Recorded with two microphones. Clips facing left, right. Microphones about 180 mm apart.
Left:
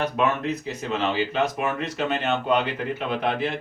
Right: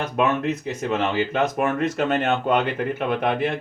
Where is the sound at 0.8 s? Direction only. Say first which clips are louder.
Right 2 dB; 50° right (ahead or behind).